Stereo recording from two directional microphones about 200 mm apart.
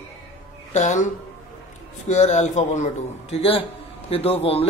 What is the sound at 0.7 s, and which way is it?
Speech, 35° left (ahead or behind).